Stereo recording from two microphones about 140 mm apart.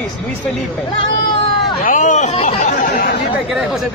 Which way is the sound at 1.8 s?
65° left (ahead or behind).